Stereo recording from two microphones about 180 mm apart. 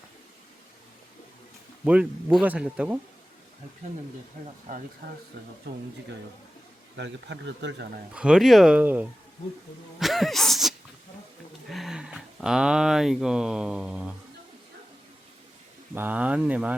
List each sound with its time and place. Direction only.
1.8 s speech: 5° right (ahead or behind)
4.7 s speech: 45° right (ahead or behind)
6.9 s speech: 80° right
8.1 s speech: 5° right (ahead or behind)
16.0 s speech: 10° right (ahead or behind)